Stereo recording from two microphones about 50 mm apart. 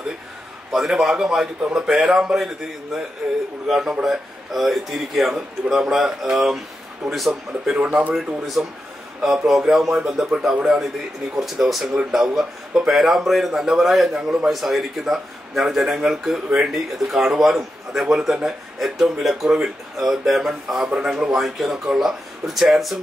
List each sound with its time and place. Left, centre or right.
0.7 s a man's voice: centre
2.3 s a man's voice: centre
7.7 s speech: right
8.6 s a man's voice: centre